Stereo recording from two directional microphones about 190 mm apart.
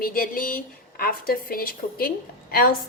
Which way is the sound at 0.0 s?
50° left (ahead or behind).